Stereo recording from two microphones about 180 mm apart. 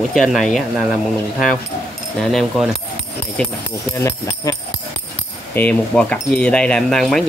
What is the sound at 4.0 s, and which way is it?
Music, 15° left (ahead or behind).